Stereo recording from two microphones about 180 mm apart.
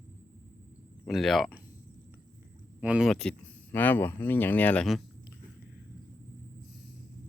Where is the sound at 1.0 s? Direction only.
Centre (ahead or behind).